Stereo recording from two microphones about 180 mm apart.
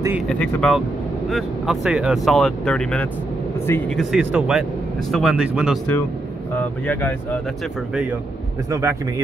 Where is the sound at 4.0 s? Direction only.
5° right (ahead or behind).